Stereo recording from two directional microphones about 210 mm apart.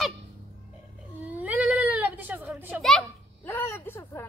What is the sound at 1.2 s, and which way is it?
Speech, 5° right (ahead or behind).